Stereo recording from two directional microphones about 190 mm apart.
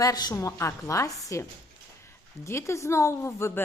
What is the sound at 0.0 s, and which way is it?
A woman's voice, 20° left (ahead or behind).